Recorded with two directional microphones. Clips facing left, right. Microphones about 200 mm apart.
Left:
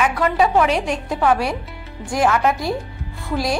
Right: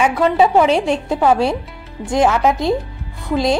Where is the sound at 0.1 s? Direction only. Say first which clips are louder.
Right 4 dB; 25° right (ahead or behind).